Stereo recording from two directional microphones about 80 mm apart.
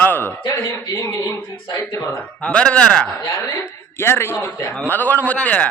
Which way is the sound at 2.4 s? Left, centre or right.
Centre.